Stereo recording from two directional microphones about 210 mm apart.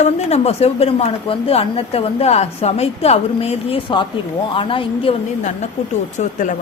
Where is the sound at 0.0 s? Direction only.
30° left (ahead or behind).